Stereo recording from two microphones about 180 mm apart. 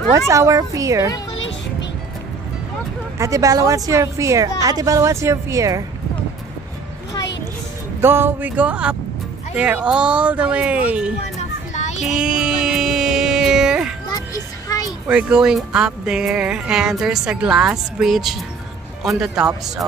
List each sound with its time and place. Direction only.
0.1 s a woman's voice: 15° right (ahead or behind)
3.2 s a woman's voice: 20° right (ahead or behind)
8.0 s a woman's voice: 10° right (ahead or behind)
11.3 s a sound: 40° left (ahead or behind)
12.1 s music: 5° right (ahead or behind)
14.0 s music: 20° left (ahead or behind)
15.0 s speech: 5° right (ahead or behind)
19.4 s speech: 20° right (ahead or behind)